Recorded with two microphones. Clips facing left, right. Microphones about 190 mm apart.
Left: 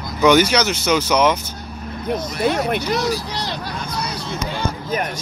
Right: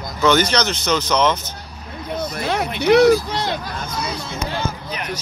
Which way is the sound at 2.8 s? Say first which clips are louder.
Right 9 dB; 65° right (ahead or behind).